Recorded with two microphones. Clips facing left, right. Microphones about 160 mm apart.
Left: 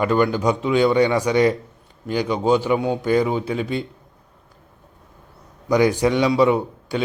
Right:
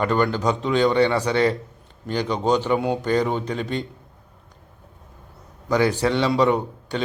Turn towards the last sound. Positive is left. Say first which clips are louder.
# left 2 dB
turn(degrees=10)  # may be behind; listen again after turning